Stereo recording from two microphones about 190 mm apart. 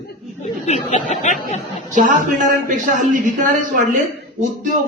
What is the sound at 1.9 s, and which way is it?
A man's voice, 45° right (ahead or behind).